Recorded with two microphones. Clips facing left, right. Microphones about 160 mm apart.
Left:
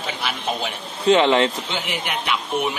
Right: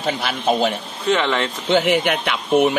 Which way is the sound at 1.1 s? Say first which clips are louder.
Left 4 dB; 25° left (ahead or behind).